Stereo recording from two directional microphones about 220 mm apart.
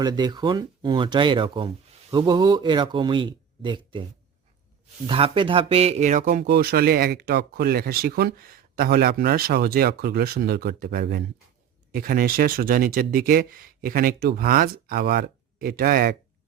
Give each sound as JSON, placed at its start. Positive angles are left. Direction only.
{"t": 0.0, "sound": "speech", "side_deg": -20}
{"t": 5.0, "sound": "a man's voice", "side_deg": -25}